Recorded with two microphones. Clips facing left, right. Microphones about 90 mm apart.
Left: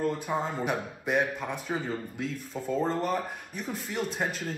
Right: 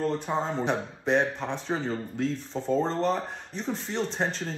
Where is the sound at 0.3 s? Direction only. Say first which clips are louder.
Right 2 dB; 20° right (ahead or behind).